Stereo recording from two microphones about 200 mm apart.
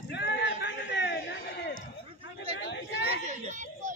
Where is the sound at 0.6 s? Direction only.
60° left (ahead or behind).